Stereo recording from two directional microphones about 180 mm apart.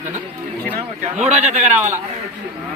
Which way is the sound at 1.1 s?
35° right (ahead or behind).